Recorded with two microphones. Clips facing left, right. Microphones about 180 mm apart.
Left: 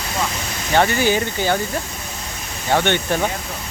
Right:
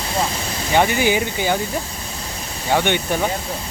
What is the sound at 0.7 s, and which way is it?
Speech, 10° right (ahead or behind).